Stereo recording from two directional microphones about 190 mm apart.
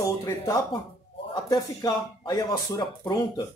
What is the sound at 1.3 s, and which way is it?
Speech, 20° left (ahead or behind).